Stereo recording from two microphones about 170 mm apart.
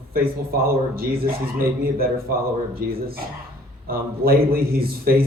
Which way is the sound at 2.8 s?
60° right (ahead or behind).